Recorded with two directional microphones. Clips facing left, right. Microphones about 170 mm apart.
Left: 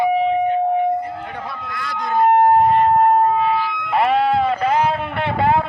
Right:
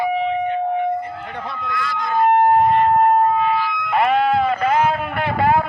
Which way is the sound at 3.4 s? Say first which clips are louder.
Even; 30° left (ahead or behind).